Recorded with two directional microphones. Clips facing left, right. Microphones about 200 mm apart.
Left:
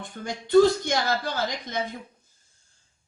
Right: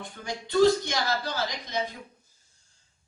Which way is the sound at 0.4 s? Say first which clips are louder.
Left 3 dB; 50° left (ahead or behind).